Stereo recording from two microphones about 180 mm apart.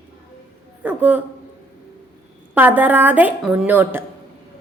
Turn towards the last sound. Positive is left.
turn(degrees=-10)  # may be behind; listen again after turning